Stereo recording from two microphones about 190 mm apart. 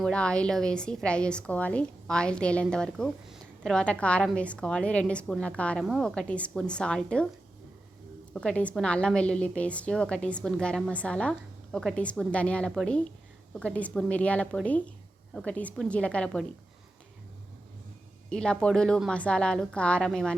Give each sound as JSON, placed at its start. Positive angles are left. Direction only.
{"t": 0.0, "sound": "a woman's voice", "side_deg": 5}
{"t": 8.3, "sound": "a woman's voice", "side_deg": 5}
{"t": 18.3, "sound": "a woman's voice", "side_deg": 5}